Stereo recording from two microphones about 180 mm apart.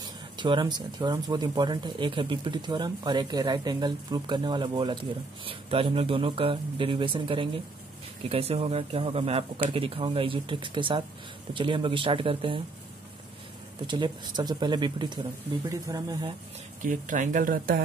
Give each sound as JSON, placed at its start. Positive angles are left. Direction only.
{"t": 0.4, "sound": "speech", "side_deg": -25}
{"t": 13.8, "sound": "speech", "side_deg": -25}
{"t": 16.8, "sound": "speech", "side_deg": -45}